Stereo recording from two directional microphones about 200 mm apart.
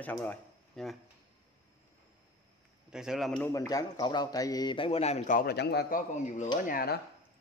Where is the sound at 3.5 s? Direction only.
15° left (ahead or behind); by 6.0 s 55° left (ahead or behind).